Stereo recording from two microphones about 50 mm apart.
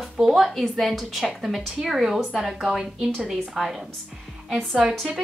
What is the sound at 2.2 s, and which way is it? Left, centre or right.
Speech, centre.